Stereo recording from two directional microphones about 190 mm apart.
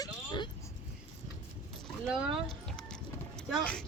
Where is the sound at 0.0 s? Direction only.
25° left (ahead or behind).